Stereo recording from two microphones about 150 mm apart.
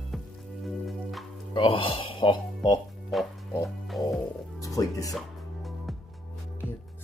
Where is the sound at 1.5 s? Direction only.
35° left (ahead or behind).